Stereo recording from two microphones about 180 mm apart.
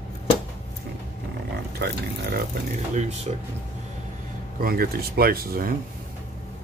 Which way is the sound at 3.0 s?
40° right (ahead or behind).